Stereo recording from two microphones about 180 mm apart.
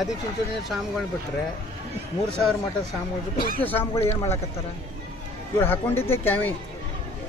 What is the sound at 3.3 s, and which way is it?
Speech, 55° left (ahead or behind).